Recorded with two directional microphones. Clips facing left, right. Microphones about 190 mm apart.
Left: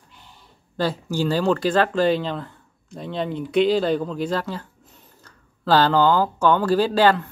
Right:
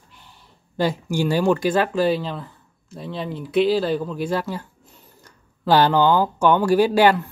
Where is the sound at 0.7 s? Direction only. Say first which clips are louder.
Right 2 dB; 15° right (ahead or behind).